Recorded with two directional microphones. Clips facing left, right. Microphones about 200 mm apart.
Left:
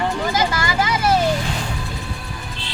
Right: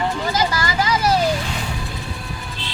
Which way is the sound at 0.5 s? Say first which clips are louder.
Even; 25° left (ahead or behind).